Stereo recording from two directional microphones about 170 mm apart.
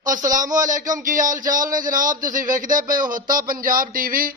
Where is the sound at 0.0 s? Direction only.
50° right (ahead or behind).